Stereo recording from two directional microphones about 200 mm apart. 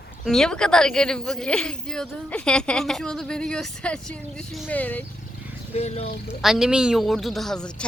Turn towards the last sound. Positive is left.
turn(degrees=5)  # may be behind; listen again after turning